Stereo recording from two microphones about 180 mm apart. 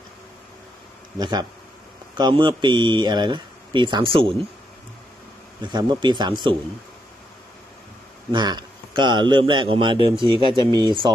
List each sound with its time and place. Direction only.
1.2 s speech: 25° right (ahead or behind)
5.6 s speech: 25° right (ahead or behind)
8.3 s speech: 25° right (ahead or behind)